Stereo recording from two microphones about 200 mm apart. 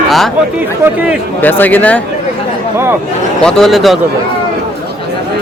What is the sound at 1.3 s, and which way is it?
Speech, 10° left (ahead or behind).